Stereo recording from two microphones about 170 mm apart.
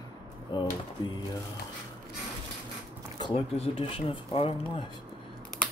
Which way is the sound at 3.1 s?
30° left (ahead or behind).